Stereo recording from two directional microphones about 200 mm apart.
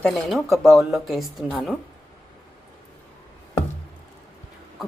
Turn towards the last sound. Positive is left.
turn(degrees=0)  # may be behind; listen again after turning